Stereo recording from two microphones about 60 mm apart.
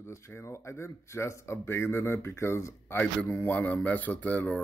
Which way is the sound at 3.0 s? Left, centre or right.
Left.